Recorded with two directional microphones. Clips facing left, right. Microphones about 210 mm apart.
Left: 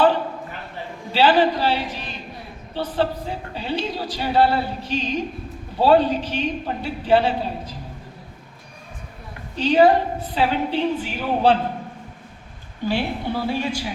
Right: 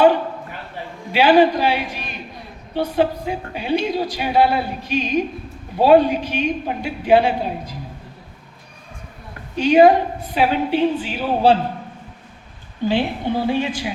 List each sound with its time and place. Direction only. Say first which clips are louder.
1.1 s speech: right 4 dB; 15° right (ahead or behind)
9.6 s speech: right 3 dB; 15° right (ahead or behind)
12.9 s a woman's voice: right 3 dB; 20° right (ahead or behind)